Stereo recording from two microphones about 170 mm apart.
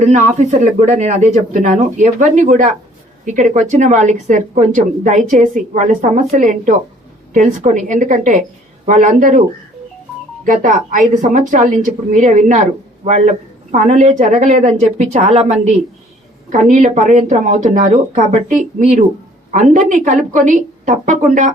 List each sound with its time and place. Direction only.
0.0 s a woman's voice: 45° right (ahead or behind)
10.4 s a woman's voice: 50° right (ahead or behind)
16.5 s a woman's voice: 45° right (ahead or behind)